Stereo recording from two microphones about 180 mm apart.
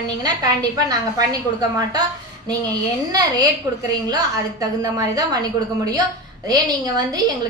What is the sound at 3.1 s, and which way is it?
Speech, 20° right (ahead or behind).